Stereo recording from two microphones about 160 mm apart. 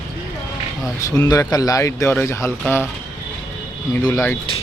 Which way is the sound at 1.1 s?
20° left (ahead or behind).